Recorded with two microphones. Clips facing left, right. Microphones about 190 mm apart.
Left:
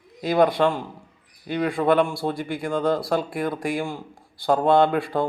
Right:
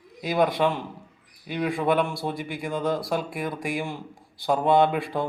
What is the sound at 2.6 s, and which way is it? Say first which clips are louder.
Speech: left 4 dB; 55° left (ahead or behind).